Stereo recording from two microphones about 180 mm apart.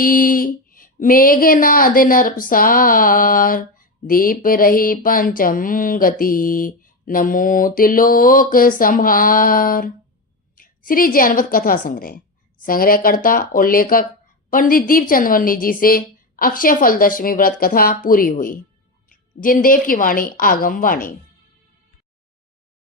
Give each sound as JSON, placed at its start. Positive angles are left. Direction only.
{"t": 0.0, "sound": "a woman's voice", "side_deg": 50}